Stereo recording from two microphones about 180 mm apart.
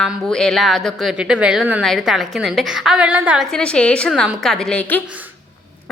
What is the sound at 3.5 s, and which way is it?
A woman's voice, 5° left (ahead or behind).